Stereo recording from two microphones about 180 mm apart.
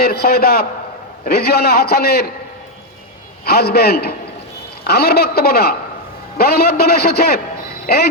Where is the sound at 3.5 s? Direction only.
60° left (ahead or behind).